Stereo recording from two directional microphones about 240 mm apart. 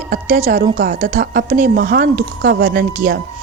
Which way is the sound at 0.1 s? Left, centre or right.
Right.